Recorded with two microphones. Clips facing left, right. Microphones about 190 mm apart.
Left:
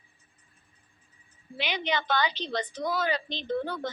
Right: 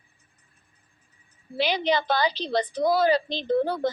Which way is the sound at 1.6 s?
35° right (ahead or behind).